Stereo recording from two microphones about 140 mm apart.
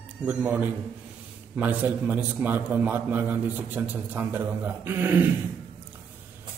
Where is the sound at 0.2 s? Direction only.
10° right (ahead or behind).